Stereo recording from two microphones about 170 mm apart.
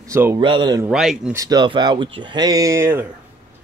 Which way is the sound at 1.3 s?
20° right (ahead or behind).